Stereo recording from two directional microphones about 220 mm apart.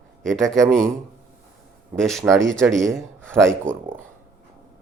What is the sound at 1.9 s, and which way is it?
A man's voice, centre (ahead or behind).